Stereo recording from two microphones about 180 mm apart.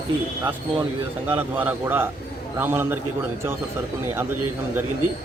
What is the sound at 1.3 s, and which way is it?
A man's voice, 10° right (ahead or behind).